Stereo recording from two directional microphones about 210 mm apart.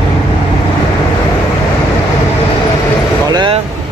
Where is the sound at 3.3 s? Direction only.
20° right (ahead or behind).